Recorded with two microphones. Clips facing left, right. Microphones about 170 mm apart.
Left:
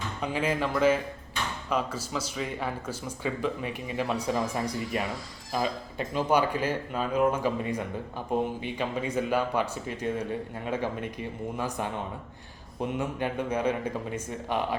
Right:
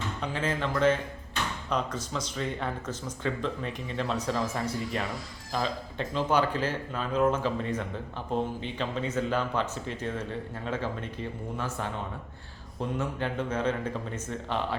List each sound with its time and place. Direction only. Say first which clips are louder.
0.2 s speech: left 4 dB; 10° left (ahead or behind)